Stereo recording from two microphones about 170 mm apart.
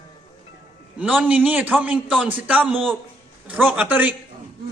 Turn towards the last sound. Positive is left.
turn(degrees=-10)  # may be behind; listen again after turning